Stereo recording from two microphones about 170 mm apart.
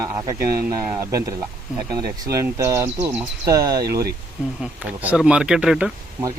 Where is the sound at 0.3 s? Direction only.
60° right (ahead or behind).